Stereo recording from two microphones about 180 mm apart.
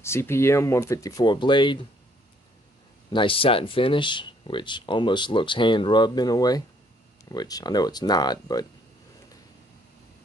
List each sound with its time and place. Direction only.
0.0 s speech: 15° left (ahead or behind)
3.1 s speech: 30° left (ahead or behind)